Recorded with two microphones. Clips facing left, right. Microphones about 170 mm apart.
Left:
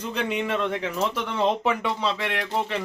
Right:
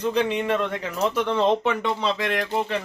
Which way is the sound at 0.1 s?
5° left (ahead or behind).